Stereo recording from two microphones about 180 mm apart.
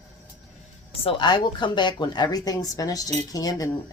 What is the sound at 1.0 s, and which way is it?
Speech, 25° left (ahead or behind).